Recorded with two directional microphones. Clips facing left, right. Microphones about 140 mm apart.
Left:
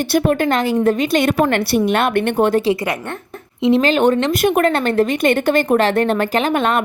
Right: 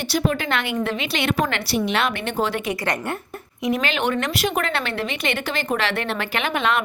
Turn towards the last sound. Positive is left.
turn(degrees=45)  # may be behind; listen again after turning